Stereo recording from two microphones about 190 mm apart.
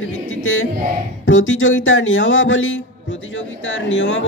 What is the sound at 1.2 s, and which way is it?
Speech, 80° left.